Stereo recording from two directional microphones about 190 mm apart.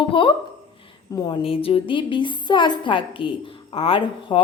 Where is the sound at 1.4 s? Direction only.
30° left (ahead or behind).